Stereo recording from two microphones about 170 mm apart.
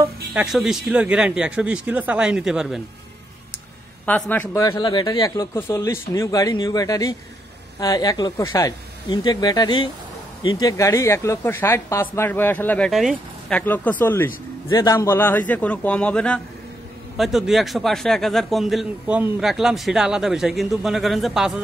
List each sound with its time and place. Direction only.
0.3 s a man's voice: 5° right (ahead or behind)
4.0 s a man's voice: 10° left (ahead or behind)
14.7 s a man's voice: 25° left (ahead or behind)
15.0 s a man's voice: 15° left (ahead or behind)